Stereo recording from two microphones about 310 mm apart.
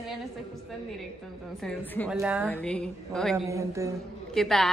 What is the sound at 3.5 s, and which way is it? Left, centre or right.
Speech, centre.